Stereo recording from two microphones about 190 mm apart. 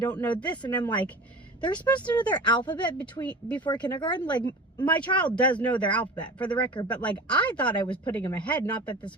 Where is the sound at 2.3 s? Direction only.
25° left (ahead or behind).